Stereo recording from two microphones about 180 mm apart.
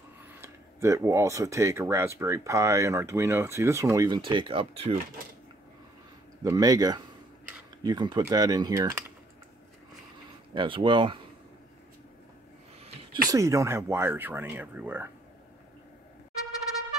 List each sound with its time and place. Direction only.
0.4 s speech: 15° right (ahead or behind); by 4.9 s 30° right (ahead or behind)
6.4 s speech: 20° right (ahead or behind)
10.5 s speech: 25° right (ahead or behind)
13.3 s speech: 15° right (ahead or behind)